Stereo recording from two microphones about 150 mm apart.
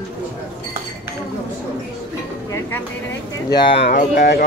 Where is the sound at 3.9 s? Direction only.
80° left.